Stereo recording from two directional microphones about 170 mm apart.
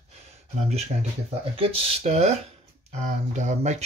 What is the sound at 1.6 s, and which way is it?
Speech, 35° right (ahead or behind).